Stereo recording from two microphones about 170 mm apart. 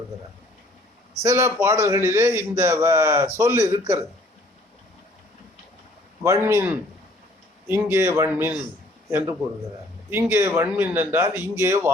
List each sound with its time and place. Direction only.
1.2 s a man's voice: 15° right (ahead or behind)
6.2 s a man's voice: 15° right (ahead or behind)
10.1 s a man's voice: 15° right (ahead or behind)